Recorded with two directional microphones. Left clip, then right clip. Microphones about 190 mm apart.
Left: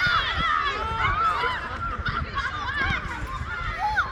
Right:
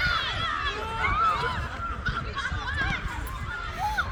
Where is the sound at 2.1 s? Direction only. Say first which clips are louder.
Left 2 dB; 50° right (ahead or behind).